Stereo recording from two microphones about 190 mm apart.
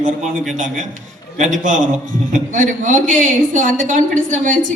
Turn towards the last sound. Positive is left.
turn(degrees=-40)  # may be behind; listen again after turning